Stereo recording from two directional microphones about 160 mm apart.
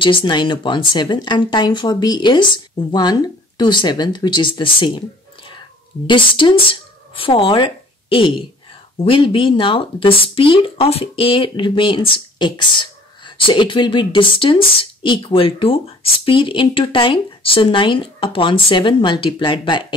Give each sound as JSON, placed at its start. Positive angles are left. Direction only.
{"t": 0.0, "sound": "speech", "side_deg": 30}
{"t": 6.0, "sound": "a woman's voice", "side_deg": 30}